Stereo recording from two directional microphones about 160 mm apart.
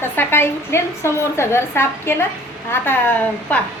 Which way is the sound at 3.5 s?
10° left (ahead or behind).